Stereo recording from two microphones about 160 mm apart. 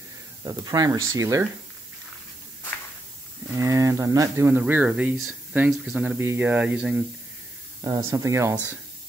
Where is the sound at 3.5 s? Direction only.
20° right (ahead or behind).